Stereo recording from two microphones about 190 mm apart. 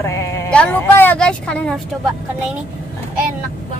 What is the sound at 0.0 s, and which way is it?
Speech, 15° left (ahead or behind).